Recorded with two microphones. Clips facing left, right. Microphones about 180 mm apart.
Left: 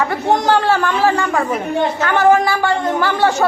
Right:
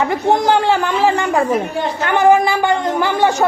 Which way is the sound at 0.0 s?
15° right (ahead or behind).